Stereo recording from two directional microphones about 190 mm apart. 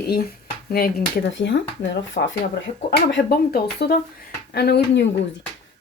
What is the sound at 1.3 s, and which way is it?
Speech, 70° left (ahead or behind).